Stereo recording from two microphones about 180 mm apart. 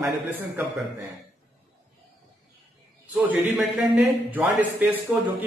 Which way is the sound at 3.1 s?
10° right (ahead or behind).